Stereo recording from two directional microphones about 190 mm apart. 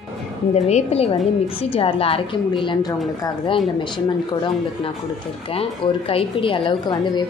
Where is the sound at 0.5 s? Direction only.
35° left (ahead or behind).